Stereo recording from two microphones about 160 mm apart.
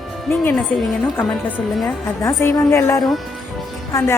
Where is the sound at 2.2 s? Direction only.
15° left (ahead or behind).